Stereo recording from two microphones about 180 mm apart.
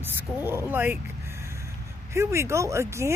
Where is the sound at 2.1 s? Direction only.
15° right (ahead or behind).